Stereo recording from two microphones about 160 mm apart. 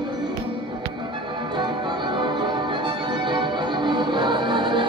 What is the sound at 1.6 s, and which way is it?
Music, 30° right (ahead or behind).